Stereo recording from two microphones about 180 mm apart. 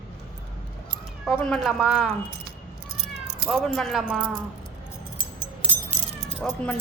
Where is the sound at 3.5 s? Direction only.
Centre (ahead or behind).